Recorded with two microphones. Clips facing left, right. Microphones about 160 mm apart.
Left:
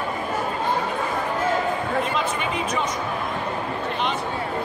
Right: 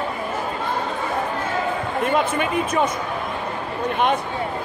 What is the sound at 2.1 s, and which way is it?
Speech, 55° right (ahead or behind).